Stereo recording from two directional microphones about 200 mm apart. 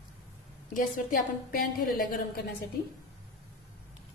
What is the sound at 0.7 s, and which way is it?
A woman's voice, 45° left (ahead or behind).